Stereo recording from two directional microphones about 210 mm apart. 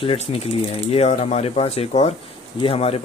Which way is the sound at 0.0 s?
25° left (ahead or behind).